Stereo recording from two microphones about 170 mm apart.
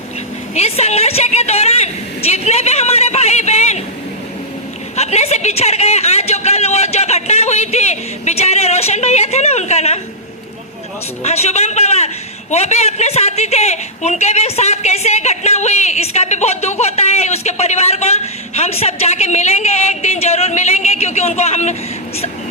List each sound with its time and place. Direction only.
0.5 s a man's voice: 40° left (ahead or behind)
4.9 s a man's voice: 40° left (ahead or behind)
11.2 s a man's voice: 40° left (ahead or behind)